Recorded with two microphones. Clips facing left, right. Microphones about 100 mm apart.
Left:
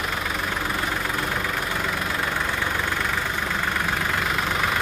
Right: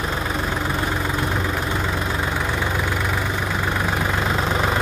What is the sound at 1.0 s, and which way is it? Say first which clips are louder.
Vehicle: right 3 dB; 25° right (ahead or behind).